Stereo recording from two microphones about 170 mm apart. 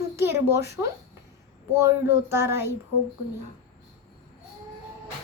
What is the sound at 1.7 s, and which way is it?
A child's voice, 15° right (ahead or behind).